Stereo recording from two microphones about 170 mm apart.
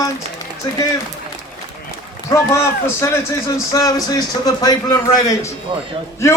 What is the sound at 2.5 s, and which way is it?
A man's voice, 15° left (ahead or behind).